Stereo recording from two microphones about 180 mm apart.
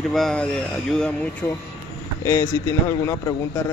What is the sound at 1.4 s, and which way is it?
A man's voice, 15° left (ahead or behind).